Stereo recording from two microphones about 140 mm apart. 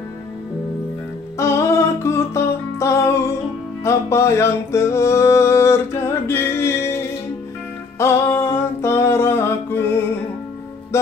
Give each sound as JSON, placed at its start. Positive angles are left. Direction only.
{"t": 1.4, "sound": "music", "side_deg": 20}